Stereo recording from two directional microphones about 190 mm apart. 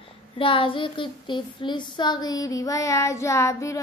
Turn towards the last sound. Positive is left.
turn(degrees=15)  # may be behind; listen again after turning